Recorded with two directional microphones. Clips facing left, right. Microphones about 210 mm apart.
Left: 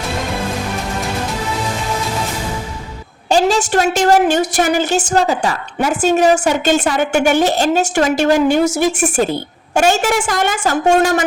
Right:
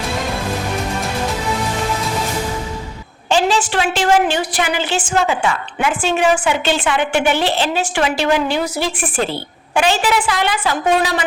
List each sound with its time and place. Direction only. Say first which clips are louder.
3.2 s a woman's voice: left 2 dB; 40° left (ahead or behind)